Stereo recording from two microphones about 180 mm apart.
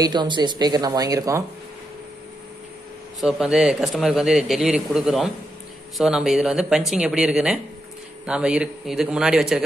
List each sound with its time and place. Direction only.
0.0 s speech: 25° right (ahead or behind)
3.2 s a man's voice: 5° right (ahead or behind)